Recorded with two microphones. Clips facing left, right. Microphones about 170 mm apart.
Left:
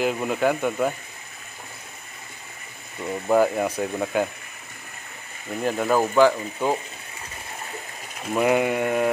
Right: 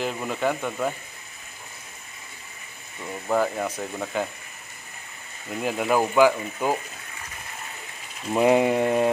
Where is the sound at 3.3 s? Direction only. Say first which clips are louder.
Left 4 dB; 10° left (ahead or behind).